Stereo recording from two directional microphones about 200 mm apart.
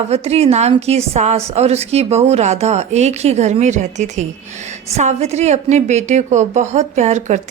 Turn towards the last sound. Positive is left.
turn(degrees=-35)  # may be behind; listen again after turning